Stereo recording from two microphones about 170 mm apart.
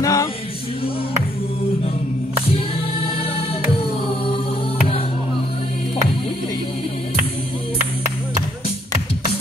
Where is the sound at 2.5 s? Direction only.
35° left (ahead or behind).